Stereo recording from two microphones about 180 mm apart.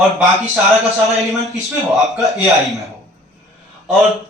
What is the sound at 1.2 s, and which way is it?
A man's voice, centre (ahead or behind).